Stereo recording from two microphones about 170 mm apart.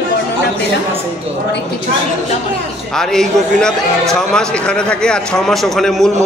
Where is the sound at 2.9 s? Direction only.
5° left (ahead or behind).